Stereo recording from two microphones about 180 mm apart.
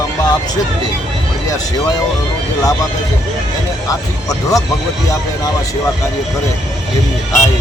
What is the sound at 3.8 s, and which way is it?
Speech, 20° left (ahead or behind).